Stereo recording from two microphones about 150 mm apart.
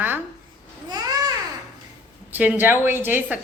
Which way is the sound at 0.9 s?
25° right (ahead or behind).